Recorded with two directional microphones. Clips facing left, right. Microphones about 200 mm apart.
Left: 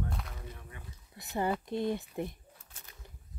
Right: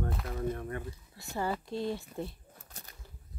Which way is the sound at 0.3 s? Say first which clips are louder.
Right 14 dB; 55° right (ahead or behind).